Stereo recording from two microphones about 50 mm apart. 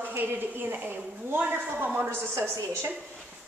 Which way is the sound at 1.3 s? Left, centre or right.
Right.